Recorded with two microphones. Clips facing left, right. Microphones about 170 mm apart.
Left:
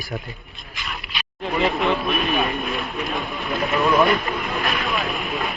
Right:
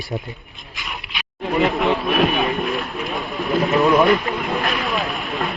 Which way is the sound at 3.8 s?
Centre (ahead or behind).